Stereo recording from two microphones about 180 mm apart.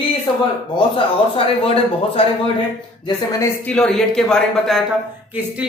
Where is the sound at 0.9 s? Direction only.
30° left (ahead or behind).